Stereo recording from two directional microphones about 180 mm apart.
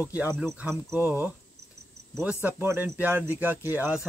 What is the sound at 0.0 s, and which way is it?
Speech, 10° right (ahead or behind).